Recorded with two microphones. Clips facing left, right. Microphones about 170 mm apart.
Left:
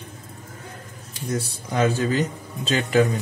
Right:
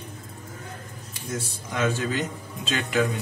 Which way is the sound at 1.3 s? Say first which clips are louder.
Left 5 dB; 35° left (ahead or behind).